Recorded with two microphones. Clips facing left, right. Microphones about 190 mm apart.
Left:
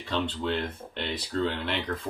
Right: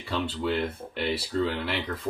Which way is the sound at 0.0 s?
10° right (ahead or behind).